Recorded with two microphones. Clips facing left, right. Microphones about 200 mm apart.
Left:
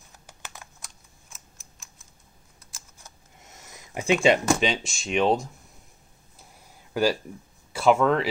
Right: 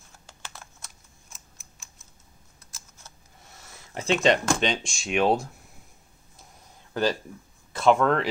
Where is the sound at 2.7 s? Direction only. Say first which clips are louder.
Left 1 dB; 15° left (ahead or behind); by 5.4 s 5° right (ahead or behind).